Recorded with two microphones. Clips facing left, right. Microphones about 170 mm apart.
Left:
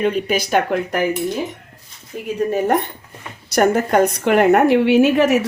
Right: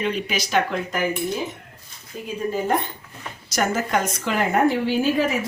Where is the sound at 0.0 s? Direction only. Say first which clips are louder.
Left 7 dB; 50° left (ahead or behind).